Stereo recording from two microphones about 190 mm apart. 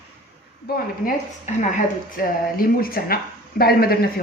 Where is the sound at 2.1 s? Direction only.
50° left (ahead or behind).